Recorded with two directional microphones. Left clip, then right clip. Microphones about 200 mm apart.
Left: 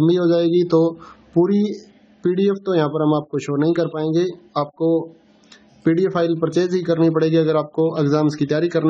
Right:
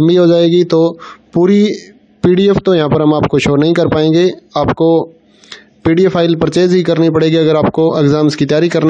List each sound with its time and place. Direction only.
0.0 s speech: 35° right (ahead or behind)